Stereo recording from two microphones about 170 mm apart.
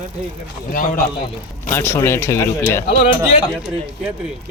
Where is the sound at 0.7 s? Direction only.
55° left (ahead or behind).